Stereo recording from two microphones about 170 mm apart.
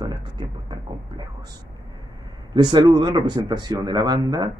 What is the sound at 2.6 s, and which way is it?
Speech, 25° right (ahead or behind).